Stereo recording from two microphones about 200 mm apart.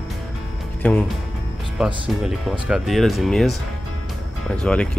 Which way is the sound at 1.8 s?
5° right (ahead or behind).